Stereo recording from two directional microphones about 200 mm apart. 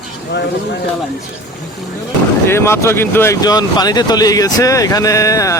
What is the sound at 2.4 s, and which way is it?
Speech, 10° left (ahead or behind).